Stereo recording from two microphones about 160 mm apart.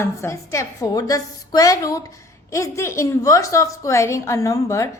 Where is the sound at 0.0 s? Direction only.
15° left (ahead or behind).